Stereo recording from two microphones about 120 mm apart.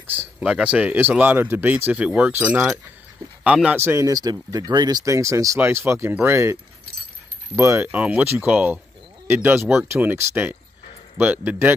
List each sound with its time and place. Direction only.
0.1 s speech: 10° right (ahead or behind)
3.8 s speech: 25° right (ahead or behind)